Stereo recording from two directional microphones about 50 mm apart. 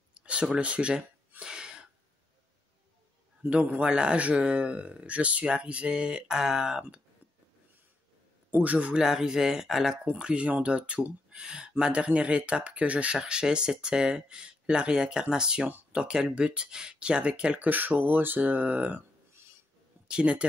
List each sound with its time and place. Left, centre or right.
0.1 s speech: centre
1.4 s a sound: centre
3.6 s speech: right
8.5 s a man's voice: right
8.7 s speech: right
9.0 s speech: centre
10.0 s speech: right
11.2 s speech: centre
17.6 s speech: right
20.1 s speech: right